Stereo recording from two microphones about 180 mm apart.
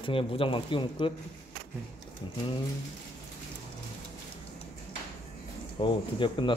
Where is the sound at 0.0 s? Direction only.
30° left (ahead or behind).